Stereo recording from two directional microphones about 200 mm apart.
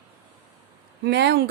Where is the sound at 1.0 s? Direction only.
60° right (ahead or behind).